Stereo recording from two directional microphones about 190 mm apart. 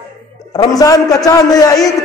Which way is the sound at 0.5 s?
20° left (ahead or behind).